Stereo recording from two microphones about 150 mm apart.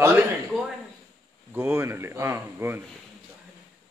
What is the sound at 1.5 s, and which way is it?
Speech, 15° right (ahead or behind).